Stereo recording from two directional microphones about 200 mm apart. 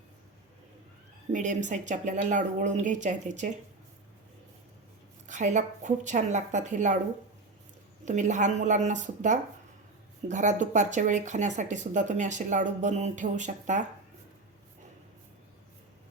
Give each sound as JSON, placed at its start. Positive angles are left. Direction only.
{"t": 1.3, "sound": "speech", "side_deg": -40}
{"t": 5.3, "sound": "speech", "side_deg": -35}
{"t": 8.0, "sound": "speech", "side_deg": -35}